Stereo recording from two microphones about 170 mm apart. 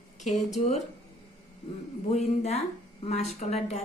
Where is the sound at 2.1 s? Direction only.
40° left (ahead or behind).